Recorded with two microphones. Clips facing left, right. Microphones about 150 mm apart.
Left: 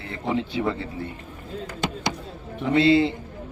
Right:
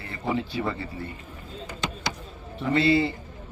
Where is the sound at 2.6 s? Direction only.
15° left (ahead or behind).